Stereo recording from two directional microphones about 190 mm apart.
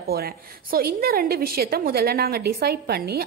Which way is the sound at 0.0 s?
55° right (ahead or behind).